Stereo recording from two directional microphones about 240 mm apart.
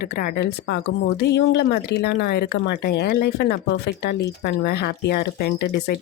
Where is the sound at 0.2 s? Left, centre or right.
Left.